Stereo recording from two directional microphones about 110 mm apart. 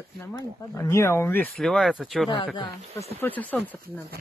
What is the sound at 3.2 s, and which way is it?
Speech, 15° left (ahead or behind).